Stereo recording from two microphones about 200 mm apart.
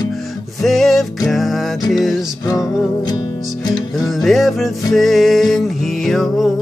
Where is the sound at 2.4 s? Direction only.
20° left (ahead or behind).